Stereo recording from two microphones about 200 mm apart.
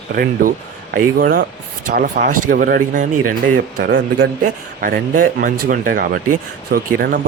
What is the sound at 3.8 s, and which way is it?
A man's voice, 55° right (ahead or behind).